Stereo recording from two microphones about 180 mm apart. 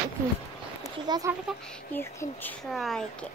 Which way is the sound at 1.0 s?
25° right (ahead or behind).